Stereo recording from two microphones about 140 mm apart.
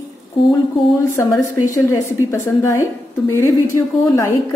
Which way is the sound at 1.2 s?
20° left (ahead or behind).